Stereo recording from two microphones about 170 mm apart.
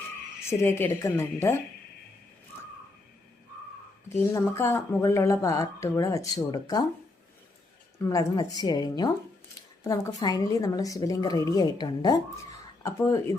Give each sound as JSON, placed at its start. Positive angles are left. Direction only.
{"t": 0.4, "sound": "speech", "side_deg": 15}
{"t": 4.4, "sound": "speech", "side_deg": 15}
{"t": 7.9, "sound": "a woman's voice", "side_deg": 20}